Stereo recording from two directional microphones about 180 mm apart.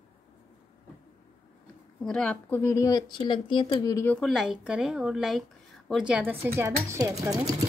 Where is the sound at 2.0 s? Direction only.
5° left (ahead or behind).